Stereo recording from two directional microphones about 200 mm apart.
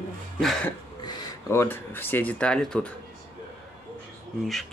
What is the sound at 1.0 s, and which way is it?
Speech, 20° left (ahead or behind).